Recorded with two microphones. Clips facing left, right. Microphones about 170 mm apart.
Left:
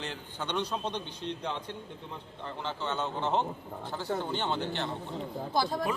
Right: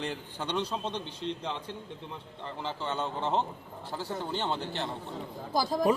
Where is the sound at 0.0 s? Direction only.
5° right (ahead or behind).